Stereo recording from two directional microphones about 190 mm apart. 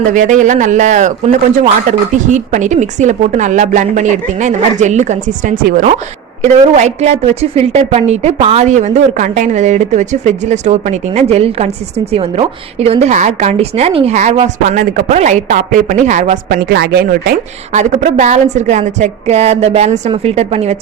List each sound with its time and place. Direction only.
0.1 s a woman's voice: 40° right (ahead or behind)
16.6 s speech: 55° right (ahead or behind)
17.7 s a woman's voice: 40° right (ahead or behind)